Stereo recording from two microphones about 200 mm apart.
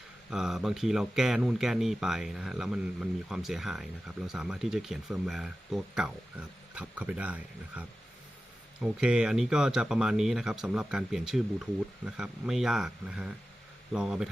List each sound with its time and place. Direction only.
0.3 s speech: centre (ahead or behind)
8.8 s speech: 5° right (ahead or behind)